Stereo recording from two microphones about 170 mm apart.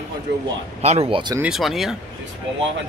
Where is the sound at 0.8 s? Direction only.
35° right (ahead or behind).